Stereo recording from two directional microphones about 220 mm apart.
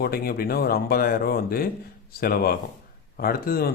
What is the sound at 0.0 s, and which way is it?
Speech, 45° left (ahead or behind).